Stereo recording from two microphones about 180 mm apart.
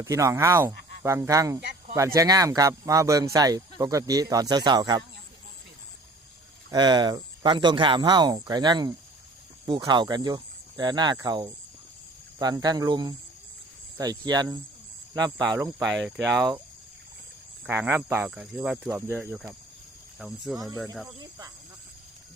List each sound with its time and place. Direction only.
0.0 s speech: 15° right (ahead or behind)
6.7 s speech: 25° right (ahead or behind)
17.7 s speech: 10° right (ahead or behind)
20.1 s speech: centre (ahead or behind)
21.2 s speech: 20° right (ahead or behind)